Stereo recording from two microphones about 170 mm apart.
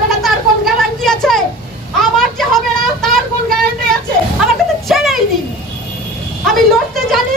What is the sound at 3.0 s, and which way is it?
Vehicle, centre (ahead or behind).